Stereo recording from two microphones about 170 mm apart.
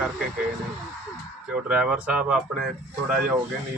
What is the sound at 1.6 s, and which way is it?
Speech, 5° right (ahead or behind).